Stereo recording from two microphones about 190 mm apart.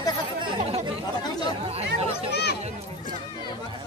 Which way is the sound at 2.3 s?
60° left (ahead or behind).